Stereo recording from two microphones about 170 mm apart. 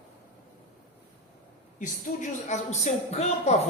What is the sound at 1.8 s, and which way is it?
A man's voice, 50° left (ahead or behind).